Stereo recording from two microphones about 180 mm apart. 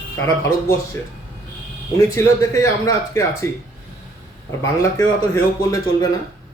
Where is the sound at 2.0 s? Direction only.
15° left (ahead or behind).